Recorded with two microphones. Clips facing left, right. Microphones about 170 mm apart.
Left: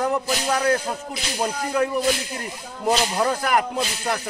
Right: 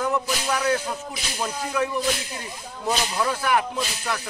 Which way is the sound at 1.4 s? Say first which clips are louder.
Left 3 dB; 45° left (ahead or behind).